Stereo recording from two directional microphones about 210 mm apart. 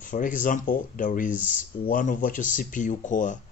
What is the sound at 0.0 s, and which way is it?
Speech, 40° left (ahead or behind).